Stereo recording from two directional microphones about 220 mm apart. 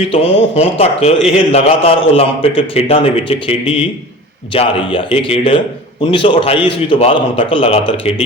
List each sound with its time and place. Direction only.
0.1 s a man's voice: 25° left (ahead or behind)